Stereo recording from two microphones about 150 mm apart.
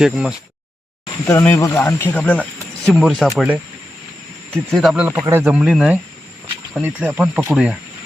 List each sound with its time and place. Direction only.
0.0 s speech: 5° right (ahead or behind)
1.3 s speech: 15° left (ahead or behind); by 5.5 s 15° right (ahead or behind)
5.5 s speech: 5° right (ahead or behind)